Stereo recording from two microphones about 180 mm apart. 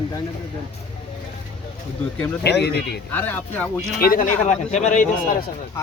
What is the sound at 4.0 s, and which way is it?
A man's voice, 50° left (ahead or behind).